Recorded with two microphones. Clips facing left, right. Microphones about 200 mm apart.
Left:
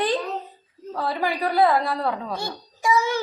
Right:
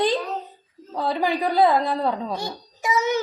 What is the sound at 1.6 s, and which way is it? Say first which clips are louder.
A child's voice: even; 20° right (ahead or behind).